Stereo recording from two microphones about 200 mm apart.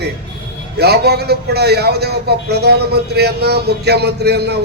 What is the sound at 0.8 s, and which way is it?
A man's voice, 55° right (ahead or behind).